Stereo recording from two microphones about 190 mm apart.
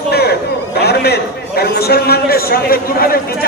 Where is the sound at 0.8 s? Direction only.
55° left (ahead or behind).